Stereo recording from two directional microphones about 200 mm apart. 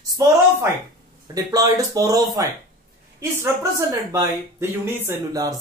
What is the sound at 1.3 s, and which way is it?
Speech, 20° right (ahead or behind).